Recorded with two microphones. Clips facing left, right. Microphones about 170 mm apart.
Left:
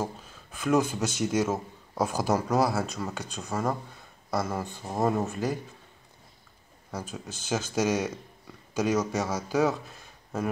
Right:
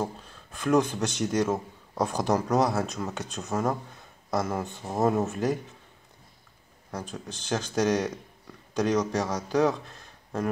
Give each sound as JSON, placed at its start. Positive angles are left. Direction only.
{"t": 0.0, "sound": "speech", "side_deg": 5}
{"t": 6.9, "sound": "speech", "side_deg": 5}